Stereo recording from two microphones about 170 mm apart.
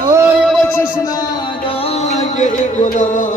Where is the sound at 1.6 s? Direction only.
35° left (ahead or behind).